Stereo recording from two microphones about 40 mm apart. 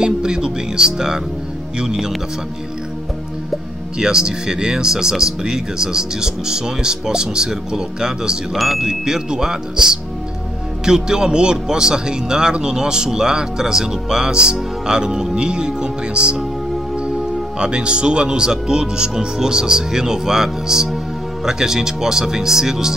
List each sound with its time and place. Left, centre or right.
0.0 s music: centre
1.8 s speech: centre
4.0 s speech: centre
8.5 s speech: centre
9.0 s speech: centre
17.6 s speech: right